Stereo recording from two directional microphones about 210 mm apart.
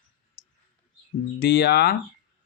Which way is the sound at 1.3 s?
50° left (ahead or behind).